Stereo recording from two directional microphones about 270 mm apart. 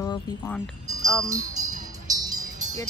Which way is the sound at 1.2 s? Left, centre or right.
Centre.